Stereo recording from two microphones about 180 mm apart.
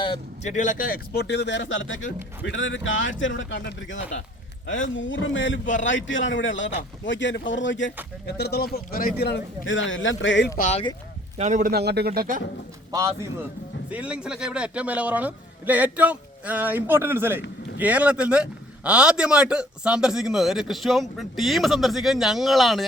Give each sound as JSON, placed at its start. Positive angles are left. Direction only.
{"t": 0.4, "sound": "a man's voice", "side_deg": 45}
{"t": 4.6, "sound": "speech", "side_deg": 90}
{"t": 8.3, "sound": "a man's voice", "side_deg": 65}
{"t": 10.6, "sound": "speech", "side_deg": 40}
{"t": 11.3, "sound": "a man's voice", "side_deg": -40}
{"t": 11.7, "sound": "speech", "side_deg": -65}
{"t": 12.9, "sound": "a man's voice", "side_deg": -15}
{"t": 13.9, "sound": "a man's voice", "side_deg": -5}